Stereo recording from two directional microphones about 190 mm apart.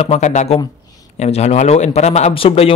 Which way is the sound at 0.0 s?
35° left (ahead or behind).